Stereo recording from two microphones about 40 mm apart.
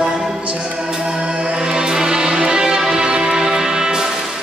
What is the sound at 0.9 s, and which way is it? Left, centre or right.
Music, centre.